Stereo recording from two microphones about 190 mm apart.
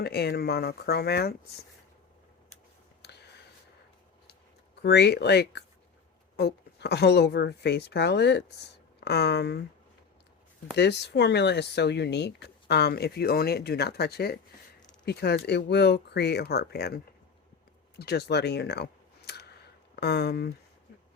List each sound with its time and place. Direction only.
0.0 s speech: 60° left (ahead or behind)
3.0 s a sound: 60° left (ahead or behind)
4.8 s speech: 60° left (ahead or behind)
10.8 s speech: 60° left (ahead or behind)
17.9 s clicking: 60° left (ahead or behind)
20.0 s speech: 60° left (ahead or behind)